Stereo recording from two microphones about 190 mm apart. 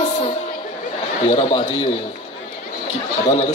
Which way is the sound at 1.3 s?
30° left (ahead or behind).